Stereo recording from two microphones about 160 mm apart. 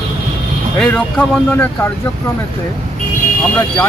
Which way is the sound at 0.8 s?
10° left (ahead or behind).